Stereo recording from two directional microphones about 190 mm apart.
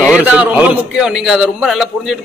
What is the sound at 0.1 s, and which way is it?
A man's voice, 5° right (ahead or behind).